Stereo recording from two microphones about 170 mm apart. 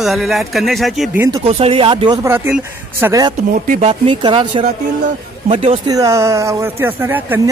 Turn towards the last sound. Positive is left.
turn(degrees=-10)  # may be behind; listen again after turning